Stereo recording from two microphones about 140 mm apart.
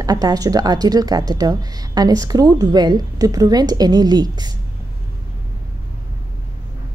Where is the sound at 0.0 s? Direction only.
25° right (ahead or behind).